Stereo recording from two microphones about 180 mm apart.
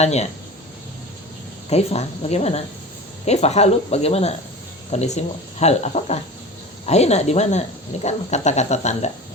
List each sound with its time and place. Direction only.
0.0 s speech: 35° left (ahead or behind)
1.7 s speech: 35° left (ahead or behind)